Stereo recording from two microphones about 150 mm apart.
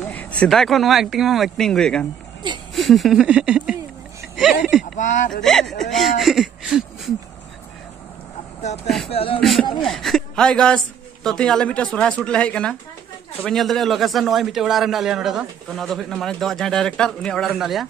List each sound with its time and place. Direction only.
0.0 s a man's voice: 10° left (ahead or behind)
4.9 s speech: 55° left (ahead or behind)
5.3 s a man's voice: 5° left (ahead or behind)
8.8 s a man's voice: centre (ahead or behind)
9.1 s speech: 40° left (ahead or behind)
9.4 s a man's voice: centre (ahead or behind)